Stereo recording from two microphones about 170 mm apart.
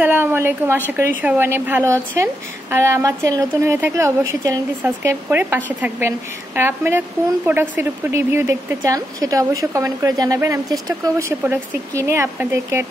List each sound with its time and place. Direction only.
0.0 s a woman's voice: 10° right (ahead or behind)